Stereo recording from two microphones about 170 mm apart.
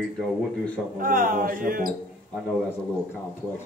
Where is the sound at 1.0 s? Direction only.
55° right (ahead or behind).